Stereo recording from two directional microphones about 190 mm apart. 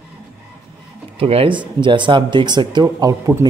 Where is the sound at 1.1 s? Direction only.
30° right (ahead or behind).